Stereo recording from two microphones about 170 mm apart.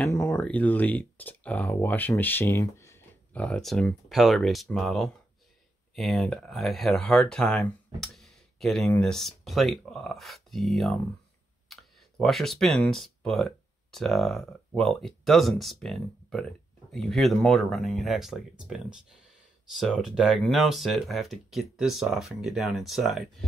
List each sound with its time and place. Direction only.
0.0 s speech: 15° left (ahead or behind); by 23.2 s centre (ahead or behind)